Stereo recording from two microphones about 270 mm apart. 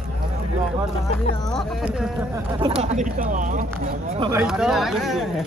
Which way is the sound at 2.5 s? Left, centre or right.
Right.